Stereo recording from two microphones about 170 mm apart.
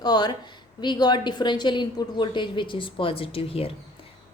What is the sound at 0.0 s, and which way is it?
A woman's voice, 25° left (ahead or behind).